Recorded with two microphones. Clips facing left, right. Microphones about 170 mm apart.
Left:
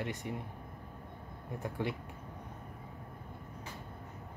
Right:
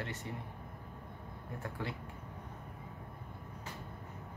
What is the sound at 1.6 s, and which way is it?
Speech, 15° left (ahead or behind).